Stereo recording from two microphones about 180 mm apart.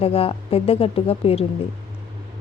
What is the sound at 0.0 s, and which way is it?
A woman's voice, 30° left (ahead or behind).